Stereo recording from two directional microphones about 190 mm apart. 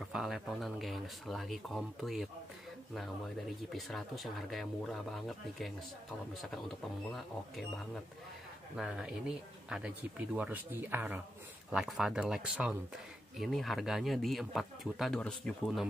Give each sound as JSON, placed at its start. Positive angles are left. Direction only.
{"t": 0.0, "sound": "speech", "side_deg": 0}
{"t": 7.1, "sound": "speech", "side_deg": 0}
{"t": 8.7, "sound": "speech", "side_deg": -5}